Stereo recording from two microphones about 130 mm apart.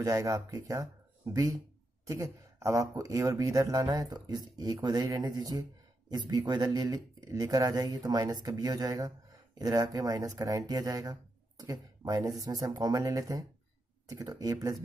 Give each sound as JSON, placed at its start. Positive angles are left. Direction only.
{"t": 0.0, "sound": "speech", "side_deg": -25}